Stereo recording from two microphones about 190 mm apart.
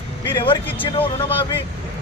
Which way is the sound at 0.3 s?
25° left (ahead or behind).